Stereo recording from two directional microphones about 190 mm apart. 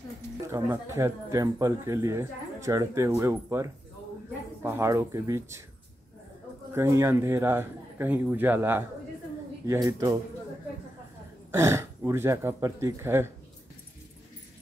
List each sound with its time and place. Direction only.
0.5 s speech: 15° right (ahead or behind)
6.7 s speech: 15° right (ahead or behind)
11.5 s speech: 15° right (ahead or behind)